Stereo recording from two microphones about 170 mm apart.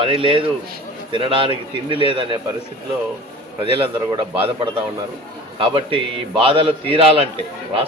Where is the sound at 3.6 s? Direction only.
35° right (ahead or behind).